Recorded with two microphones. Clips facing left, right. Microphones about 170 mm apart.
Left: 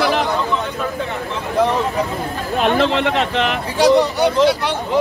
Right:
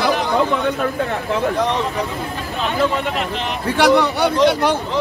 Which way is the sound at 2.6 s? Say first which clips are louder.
Left 3 dB; 85° left.